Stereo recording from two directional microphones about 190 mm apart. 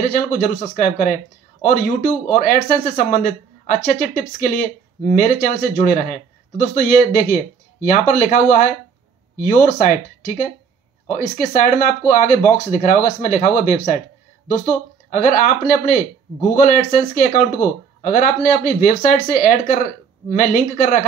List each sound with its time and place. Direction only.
0.1 s speech: 45° left (ahead or behind)
15.0 s speech: 45° left (ahead or behind)